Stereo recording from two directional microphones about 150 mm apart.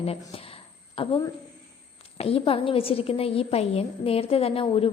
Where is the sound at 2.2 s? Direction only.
40° left (ahead or behind).